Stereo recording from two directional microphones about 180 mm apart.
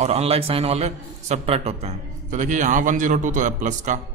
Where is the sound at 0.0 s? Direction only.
35° right (ahead or behind).